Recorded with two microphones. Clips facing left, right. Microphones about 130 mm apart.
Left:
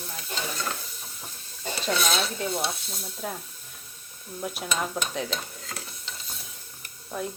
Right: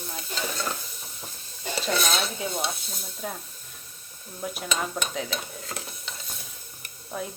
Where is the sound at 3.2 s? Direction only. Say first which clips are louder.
Even; centre (ahead or behind).